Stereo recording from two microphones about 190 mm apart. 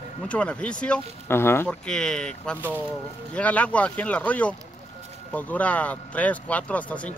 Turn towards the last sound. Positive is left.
turn(degrees=10)  # may be behind; listen again after turning